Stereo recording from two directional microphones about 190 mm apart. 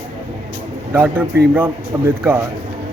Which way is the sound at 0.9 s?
10° right (ahead or behind).